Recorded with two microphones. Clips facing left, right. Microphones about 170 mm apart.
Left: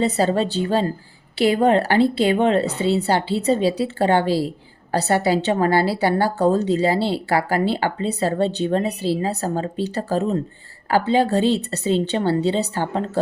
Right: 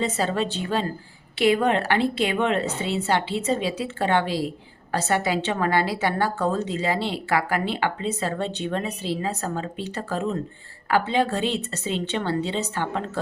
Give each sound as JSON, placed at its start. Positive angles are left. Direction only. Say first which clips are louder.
{"t": 0.0, "sound": "a woman's voice", "louder": "left 5 dB", "side_deg": 35}